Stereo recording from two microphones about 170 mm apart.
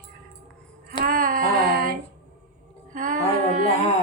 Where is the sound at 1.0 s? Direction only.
55° right (ahead or behind).